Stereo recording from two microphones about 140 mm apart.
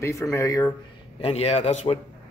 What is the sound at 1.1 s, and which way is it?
Speech, 45° left (ahead or behind).